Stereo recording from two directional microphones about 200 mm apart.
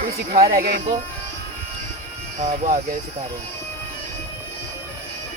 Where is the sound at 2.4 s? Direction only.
40° right (ahead or behind).